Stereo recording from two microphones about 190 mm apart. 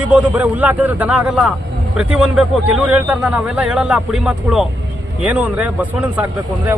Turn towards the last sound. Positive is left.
turn(degrees=-10)  # may be behind; listen again after turning